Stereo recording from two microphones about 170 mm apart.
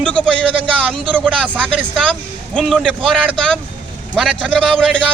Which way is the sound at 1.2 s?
10° right (ahead or behind).